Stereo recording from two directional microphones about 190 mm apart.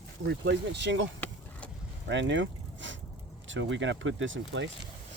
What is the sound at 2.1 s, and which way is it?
Speech, 70° right (ahead or behind).